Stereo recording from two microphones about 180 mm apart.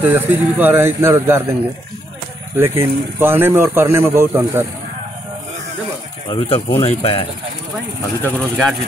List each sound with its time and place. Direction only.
0.0 s speech: 10° right (ahead or behind)
2.5 s speech: 15° right (ahead or behind)
6.8 s speech: 30° left (ahead or behind)
8.2 s speech: 5° left (ahead or behind)